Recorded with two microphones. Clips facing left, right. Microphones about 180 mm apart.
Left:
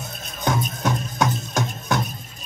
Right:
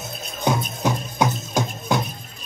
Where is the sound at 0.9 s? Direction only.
20° right (ahead or behind).